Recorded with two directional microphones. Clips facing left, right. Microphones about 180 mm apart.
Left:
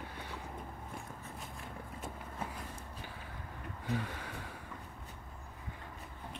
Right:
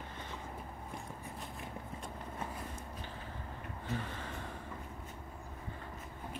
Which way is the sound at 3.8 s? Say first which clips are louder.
Left 3 dB; 10° left (ahead or behind).